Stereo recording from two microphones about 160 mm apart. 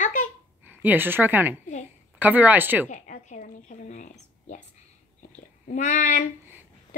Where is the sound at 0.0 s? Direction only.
50° left (ahead or behind).